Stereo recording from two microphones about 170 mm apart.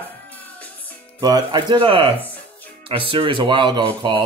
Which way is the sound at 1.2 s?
25° right (ahead or behind).